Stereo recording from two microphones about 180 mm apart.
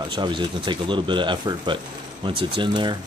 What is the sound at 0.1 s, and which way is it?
Speech, 25° right (ahead or behind).